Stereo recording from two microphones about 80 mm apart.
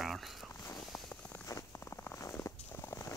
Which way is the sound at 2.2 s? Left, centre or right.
Left.